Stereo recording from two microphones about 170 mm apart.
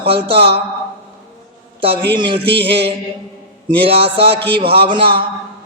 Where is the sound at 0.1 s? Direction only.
30° right (ahead or behind).